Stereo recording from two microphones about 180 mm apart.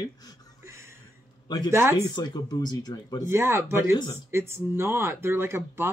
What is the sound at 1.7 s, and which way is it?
Speech, 15° right (ahead or behind).